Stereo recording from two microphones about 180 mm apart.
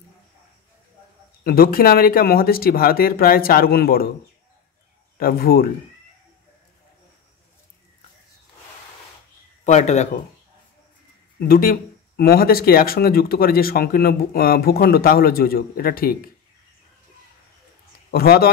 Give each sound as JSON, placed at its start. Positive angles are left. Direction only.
{"t": 1.4, "sound": "speech", "side_deg": 55}
{"t": 5.1, "sound": "a man's voice", "side_deg": 55}
{"t": 9.7, "sound": "speech", "side_deg": 40}
{"t": 11.3, "sound": "speech", "side_deg": 55}
{"t": 18.1, "sound": "speech", "side_deg": 60}